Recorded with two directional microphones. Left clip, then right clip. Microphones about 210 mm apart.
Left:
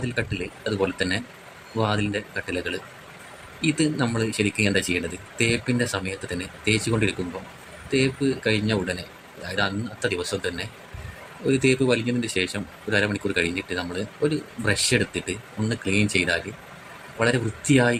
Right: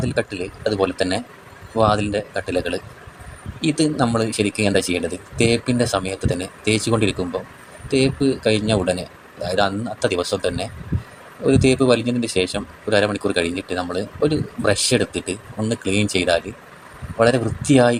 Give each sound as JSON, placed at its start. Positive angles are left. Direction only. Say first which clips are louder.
{"t": 0.0, "sound": "speech", "louder": "right 5 dB", "side_deg": -15}